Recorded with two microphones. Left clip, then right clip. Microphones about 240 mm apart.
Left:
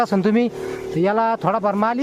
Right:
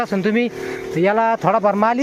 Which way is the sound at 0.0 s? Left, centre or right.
Centre.